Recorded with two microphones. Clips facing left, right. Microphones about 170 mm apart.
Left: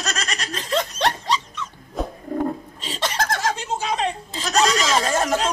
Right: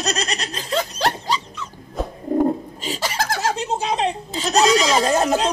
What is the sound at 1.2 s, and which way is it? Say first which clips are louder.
Dog: even; 5° right (ahead or behind).